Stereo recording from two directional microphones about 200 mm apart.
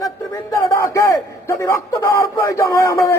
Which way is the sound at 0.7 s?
15° left (ahead or behind).